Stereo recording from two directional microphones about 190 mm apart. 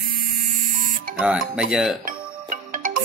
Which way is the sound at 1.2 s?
5° right (ahead or behind).